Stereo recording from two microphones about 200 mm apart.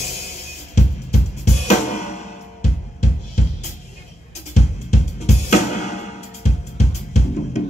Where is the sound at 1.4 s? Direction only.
35° left (ahead or behind).